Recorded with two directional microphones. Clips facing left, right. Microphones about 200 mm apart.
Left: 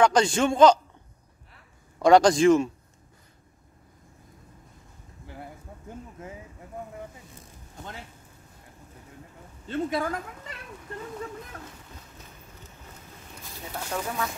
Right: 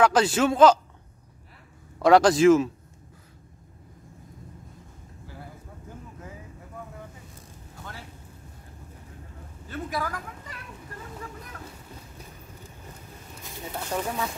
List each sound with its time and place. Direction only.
0.0 s a man's voice: 5° right (ahead or behind)
2.0 s a man's voice: 5° right (ahead or behind)
9.7 s speech: 25° left (ahead or behind)
13.7 s speech: 10° right (ahead or behind)